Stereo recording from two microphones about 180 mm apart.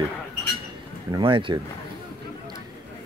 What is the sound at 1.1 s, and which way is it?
Speech, 30° right (ahead or behind).